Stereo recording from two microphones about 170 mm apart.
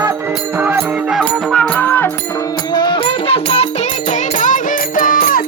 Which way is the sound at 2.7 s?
25° left (ahead or behind).